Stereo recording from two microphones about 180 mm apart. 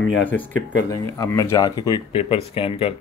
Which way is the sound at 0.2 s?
10° left (ahead or behind).